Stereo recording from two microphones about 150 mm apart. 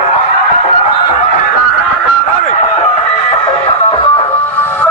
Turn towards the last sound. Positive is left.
turn(degrees=35)  # may be behind; listen again after turning